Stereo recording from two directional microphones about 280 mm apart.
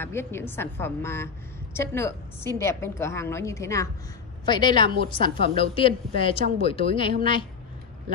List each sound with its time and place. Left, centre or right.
0.0 s a woman's voice: centre